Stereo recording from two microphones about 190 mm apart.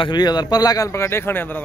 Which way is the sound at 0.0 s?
20° left (ahead or behind).